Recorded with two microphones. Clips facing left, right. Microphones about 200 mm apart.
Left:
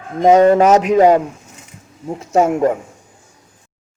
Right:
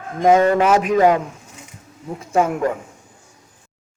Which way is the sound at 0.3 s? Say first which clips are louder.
Left 7 dB; 40° left (ahead or behind).